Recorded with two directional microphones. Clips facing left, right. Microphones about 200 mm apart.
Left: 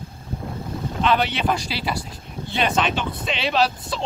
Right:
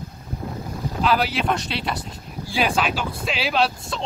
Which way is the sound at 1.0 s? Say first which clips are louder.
Even; 5° right (ahead or behind).